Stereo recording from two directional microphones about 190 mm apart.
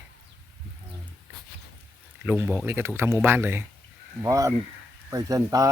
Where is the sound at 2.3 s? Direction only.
10° right (ahead or behind).